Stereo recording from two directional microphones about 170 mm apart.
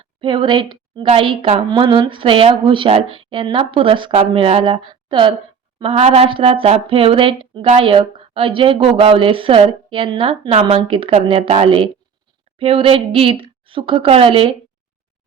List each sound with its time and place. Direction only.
0.2 s speech: 30° right (ahead or behind)